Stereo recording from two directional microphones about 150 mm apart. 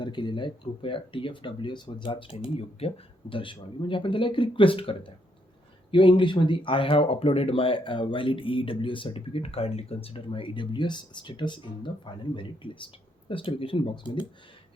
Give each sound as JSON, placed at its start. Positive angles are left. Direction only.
{"t": 0.0, "sound": "speech", "side_deg": 30}